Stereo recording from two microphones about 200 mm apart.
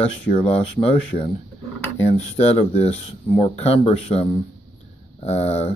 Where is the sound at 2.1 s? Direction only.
30° left (ahead or behind).